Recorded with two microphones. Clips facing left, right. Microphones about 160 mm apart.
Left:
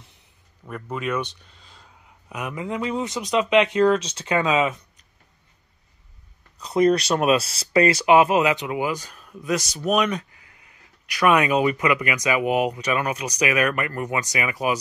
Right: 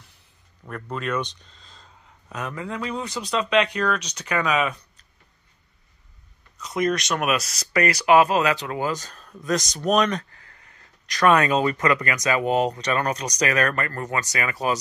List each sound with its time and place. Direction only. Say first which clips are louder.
0.7 s speech: left 1 dB; 10° left (ahead or behind)
6.6 s speech: left 5 dB; 30° left (ahead or behind); by 14.8 s 15° left (ahead or behind)